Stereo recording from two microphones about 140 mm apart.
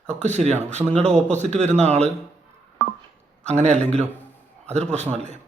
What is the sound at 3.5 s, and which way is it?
A man's voice, 55° right (ahead or behind).